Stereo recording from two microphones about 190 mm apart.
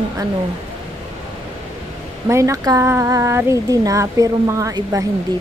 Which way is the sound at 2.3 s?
15° right (ahead or behind).